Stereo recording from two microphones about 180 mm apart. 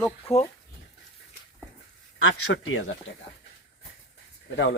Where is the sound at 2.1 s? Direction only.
90° left.